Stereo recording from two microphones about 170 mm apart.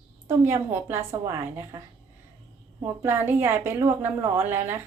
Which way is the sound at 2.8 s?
15° right (ahead or behind).